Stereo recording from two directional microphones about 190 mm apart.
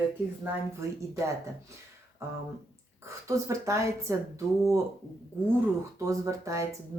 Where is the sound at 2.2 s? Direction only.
15° right (ahead or behind).